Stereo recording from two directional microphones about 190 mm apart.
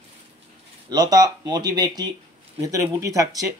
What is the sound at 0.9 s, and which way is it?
Speech, 20° right (ahead or behind).